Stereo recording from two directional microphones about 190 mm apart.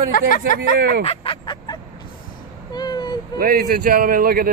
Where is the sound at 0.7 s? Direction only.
55° right (ahead or behind).